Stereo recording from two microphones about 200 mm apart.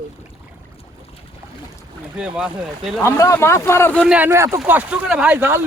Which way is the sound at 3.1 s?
15° left (ahead or behind).